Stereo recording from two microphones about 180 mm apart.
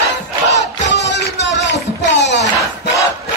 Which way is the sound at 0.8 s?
75° left (ahead or behind).